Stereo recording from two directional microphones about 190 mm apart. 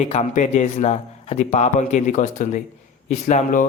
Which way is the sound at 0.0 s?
35° left (ahead or behind).